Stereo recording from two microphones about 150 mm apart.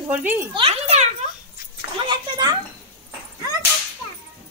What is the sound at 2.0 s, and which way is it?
Speech, 30° right (ahead or behind).